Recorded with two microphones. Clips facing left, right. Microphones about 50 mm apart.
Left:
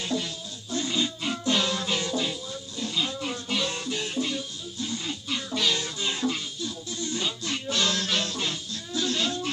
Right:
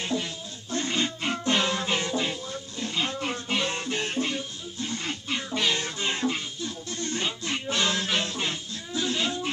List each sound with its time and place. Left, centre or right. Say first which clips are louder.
0.0 s music: even; right
5.5 s music: even; right